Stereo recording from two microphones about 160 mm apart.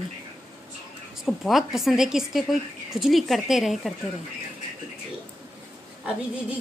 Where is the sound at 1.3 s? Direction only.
Centre (ahead or behind).